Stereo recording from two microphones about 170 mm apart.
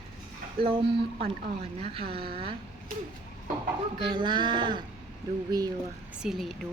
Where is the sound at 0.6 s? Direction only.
35° right (ahead or behind).